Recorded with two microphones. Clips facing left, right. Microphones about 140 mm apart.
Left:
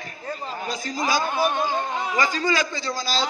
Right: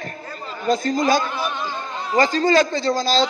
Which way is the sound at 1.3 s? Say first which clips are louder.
Left 4 dB; 50° left (ahead or behind).